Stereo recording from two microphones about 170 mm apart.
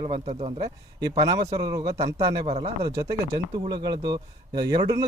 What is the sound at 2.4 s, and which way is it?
Speech, 40° right (ahead or behind).